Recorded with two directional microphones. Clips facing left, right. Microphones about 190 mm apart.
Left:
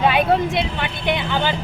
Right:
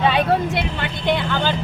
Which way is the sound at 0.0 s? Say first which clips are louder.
Left 1 dB; 15° left (ahead or behind).